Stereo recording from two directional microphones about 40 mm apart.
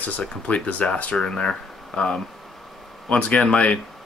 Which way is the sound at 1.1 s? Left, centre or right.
Centre.